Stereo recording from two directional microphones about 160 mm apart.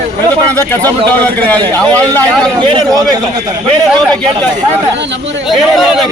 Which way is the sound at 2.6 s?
30° right (ahead or behind).